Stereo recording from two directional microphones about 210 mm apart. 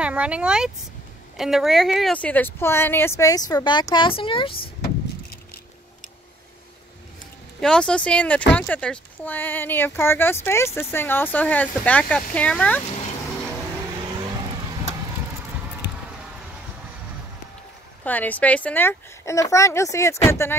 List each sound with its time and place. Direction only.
0.0 s speech: 5° right (ahead or behind); by 4.6 s 25° left (ahead or behind)
4.6 s vehicle: 45° left (ahead or behind)
7.6 s speech: 5° left (ahead or behind)
18.0 s speech: 5° left (ahead or behind)